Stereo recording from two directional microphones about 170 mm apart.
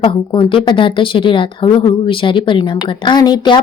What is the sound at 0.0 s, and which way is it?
A woman's voice, 30° left (ahead or behind).